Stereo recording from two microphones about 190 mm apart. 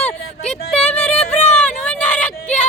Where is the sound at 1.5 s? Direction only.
5° left (ahead or behind).